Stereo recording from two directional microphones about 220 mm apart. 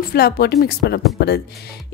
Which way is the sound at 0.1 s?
45° left (ahead or behind).